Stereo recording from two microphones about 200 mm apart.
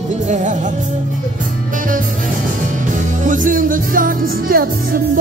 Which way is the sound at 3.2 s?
40° right (ahead or behind).